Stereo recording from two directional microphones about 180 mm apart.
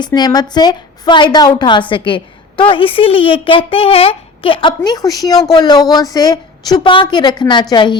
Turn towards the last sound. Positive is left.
turn(degrees=25)  # may be behind; listen again after turning